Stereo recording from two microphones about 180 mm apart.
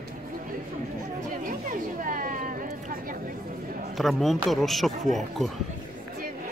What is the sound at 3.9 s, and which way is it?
Speech, centre (ahead or behind).